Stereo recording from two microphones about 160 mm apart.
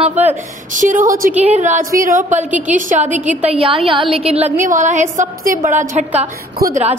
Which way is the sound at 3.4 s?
35° right (ahead or behind).